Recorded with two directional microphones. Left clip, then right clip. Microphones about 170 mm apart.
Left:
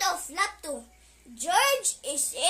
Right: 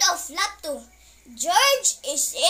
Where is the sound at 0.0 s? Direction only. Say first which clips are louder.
Right 5 dB; 20° left (ahead or behind).